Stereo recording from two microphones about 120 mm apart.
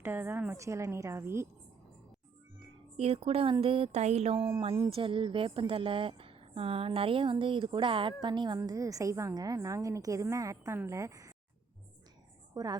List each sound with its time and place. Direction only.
0.0 s a woman's voice: 20° right (ahead or behind)
3.0 s a woman's voice: 55° right (ahead or behind)
4.9 s speech: 50° right (ahead or behind); by 11.3 s 25° right (ahead or behind)
12.5 s a woman's voice: 30° right (ahead or behind)